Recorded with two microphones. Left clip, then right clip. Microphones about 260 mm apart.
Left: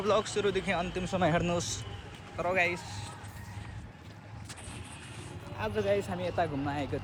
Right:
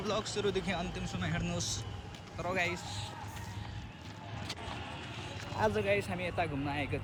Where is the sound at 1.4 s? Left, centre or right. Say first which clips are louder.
Left 5 dB; centre.